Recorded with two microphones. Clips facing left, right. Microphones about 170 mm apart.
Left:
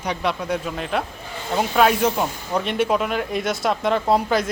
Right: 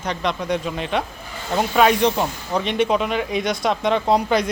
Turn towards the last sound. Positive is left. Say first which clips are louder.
# right 1 dB
turn(degrees=0)  # may be behind; listen again after turning